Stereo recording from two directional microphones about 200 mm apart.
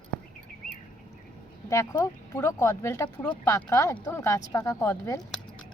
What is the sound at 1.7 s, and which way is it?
Speech, 15° left (ahead or behind).